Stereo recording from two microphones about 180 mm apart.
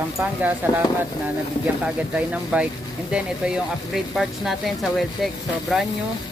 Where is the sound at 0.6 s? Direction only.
10° right (ahead or behind).